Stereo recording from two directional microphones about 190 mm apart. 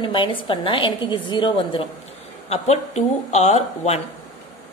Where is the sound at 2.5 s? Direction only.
35° left (ahead or behind).